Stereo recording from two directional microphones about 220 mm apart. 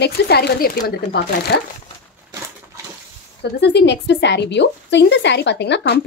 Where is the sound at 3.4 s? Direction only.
50° left (ahead or behind).